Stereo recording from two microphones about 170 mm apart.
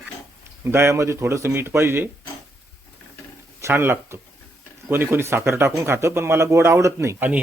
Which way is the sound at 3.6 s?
15° right (ahead or behind).